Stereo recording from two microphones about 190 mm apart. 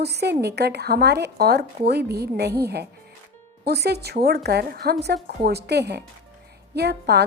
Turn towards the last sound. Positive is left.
turn(degrees=-60)  # may be behind; listen again after turning